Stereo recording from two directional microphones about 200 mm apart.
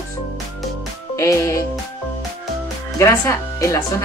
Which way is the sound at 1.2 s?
15° left (ahead or behind).